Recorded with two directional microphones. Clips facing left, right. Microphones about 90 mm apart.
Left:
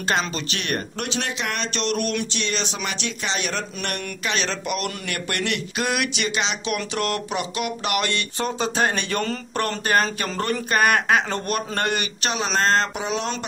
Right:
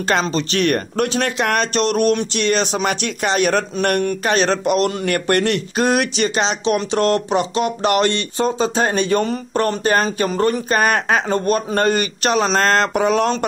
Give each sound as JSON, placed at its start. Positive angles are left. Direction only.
{"t": 0.2, "sound": "speech", "side_deg": -35}